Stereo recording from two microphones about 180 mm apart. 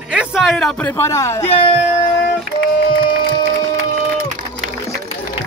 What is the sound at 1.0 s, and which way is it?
Speech, 15° left (ahead or behind).